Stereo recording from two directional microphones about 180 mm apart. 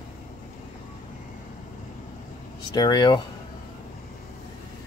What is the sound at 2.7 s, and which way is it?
Speech, 25° left (ahead or behind).